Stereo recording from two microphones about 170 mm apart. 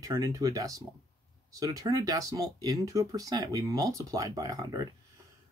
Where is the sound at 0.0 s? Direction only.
20° right (ahead or behind).